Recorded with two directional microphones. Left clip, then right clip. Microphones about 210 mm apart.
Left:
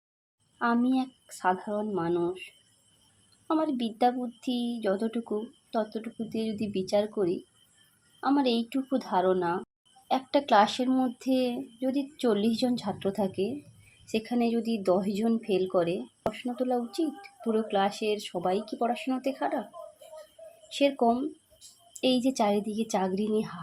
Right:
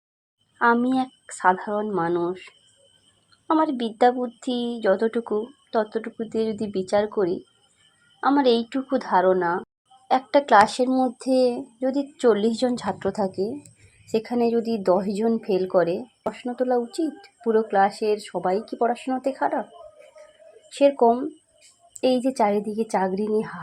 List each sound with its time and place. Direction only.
0.6 s speech: centre (ahead or behind)
10.6 s speech: 15° right (ahead or behind)
11.9 s a woman's voice: 5° left (ahead or behind)
20.7 s speech: 5° right (ahead or behind)